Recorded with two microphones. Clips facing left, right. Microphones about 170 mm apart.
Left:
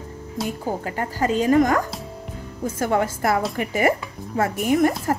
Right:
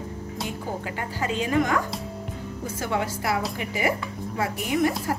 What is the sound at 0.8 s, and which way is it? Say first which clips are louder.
A woman's voice: left 7 dB; 45° left (ahead or behind).